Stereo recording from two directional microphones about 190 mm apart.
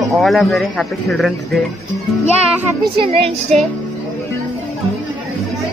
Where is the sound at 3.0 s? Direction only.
30° right (ahead or behind).